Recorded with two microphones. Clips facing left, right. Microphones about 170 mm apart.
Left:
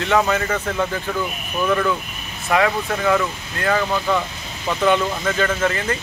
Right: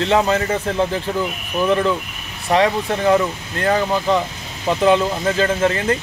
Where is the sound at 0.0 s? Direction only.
30° right (ahead or behind).